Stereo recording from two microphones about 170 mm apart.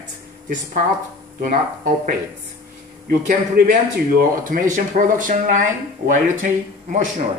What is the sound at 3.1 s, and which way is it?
A man's voice, 55° right (ahead or behind).